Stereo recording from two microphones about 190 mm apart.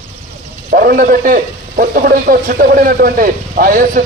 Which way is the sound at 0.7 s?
50° right (ahead or behind).